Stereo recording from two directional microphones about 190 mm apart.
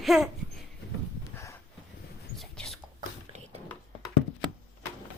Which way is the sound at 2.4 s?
Centre (ahead or behind).